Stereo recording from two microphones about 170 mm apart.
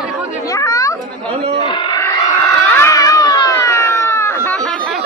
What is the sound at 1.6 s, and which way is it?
Speech, 25° left (ahead or behind).